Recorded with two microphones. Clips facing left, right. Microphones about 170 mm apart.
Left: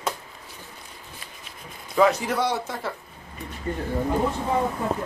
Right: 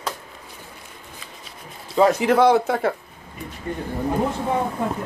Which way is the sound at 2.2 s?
80° right.